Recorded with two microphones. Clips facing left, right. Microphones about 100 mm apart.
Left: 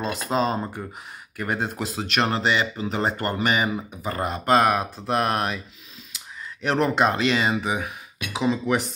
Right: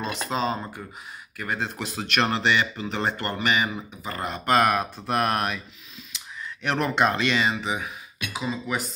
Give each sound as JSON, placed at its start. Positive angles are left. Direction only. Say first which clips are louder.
{"t": 0.3, "sound": "speech", "louder": "left 4 dB", "side_deg": 30}
{"t": 1.4, "sound": "speech", "louder": "left 3 dB", "side_deg": 20}
{"t": 1.8, "sound": "speech", "louder": "left 1 dB", "side_deg": 35}
{"t": 2.9, "sound": "speech", "louder": "left 3 dB", "side_deg": 15}
{"t": 7.5, "sound": "speech", "louder": "left 3 dB", "side_deg": 15}
{"t": 8.4, "sound": "speech", "louder": "left 6 dB", "side_deg": 70}